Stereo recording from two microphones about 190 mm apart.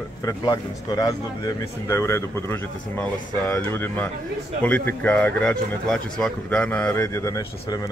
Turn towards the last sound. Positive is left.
turn(degrees=15)  # may be behind; listen again after turning